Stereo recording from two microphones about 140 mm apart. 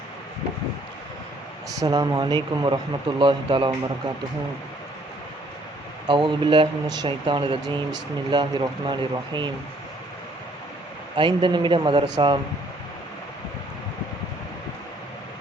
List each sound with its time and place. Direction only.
1.8 s speech: 30° right (ahead or behind)
6.1 s speech: 35° right (ahead or behind)
11.2 s speech: 35° right (ahead or behind)